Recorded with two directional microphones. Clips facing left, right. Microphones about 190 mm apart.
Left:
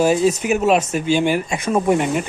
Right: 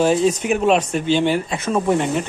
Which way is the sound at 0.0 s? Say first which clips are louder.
Left 1 dB; 10° left (ahead or behind).